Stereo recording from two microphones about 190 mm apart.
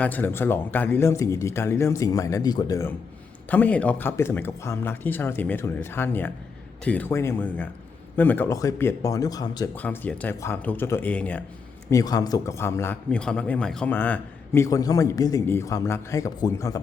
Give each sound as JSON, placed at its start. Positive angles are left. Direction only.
{"t": 0.0, "sound": "a man's voice", "side_deg": 10}
{"t": 9.7, "sound": "a man's voice", "side_deg": 10}
{"t": 11.9, "sound": "a man's voice", "side_deg": 20}